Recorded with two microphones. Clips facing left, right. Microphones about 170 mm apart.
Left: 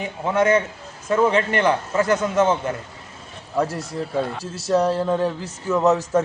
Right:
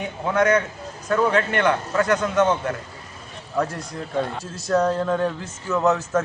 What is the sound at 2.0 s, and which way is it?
Speech, 30° left (ahead or behind).